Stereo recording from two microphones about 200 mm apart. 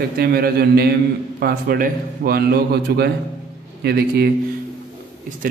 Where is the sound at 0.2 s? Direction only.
50° right (ahead or behind).